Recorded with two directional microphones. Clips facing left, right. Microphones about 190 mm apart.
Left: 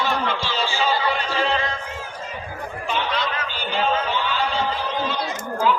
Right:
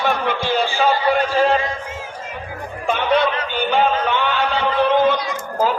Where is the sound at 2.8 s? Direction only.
50° right (ahead or behind).